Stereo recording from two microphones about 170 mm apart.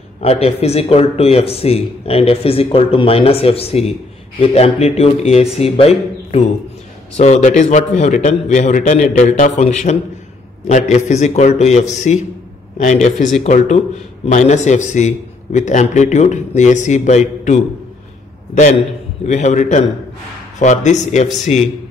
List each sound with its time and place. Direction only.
0.2 s a man's voice: 35° left (ahead or behind)